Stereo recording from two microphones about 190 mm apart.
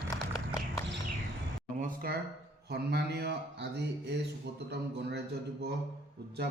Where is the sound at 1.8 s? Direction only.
50° right (ahead or behind).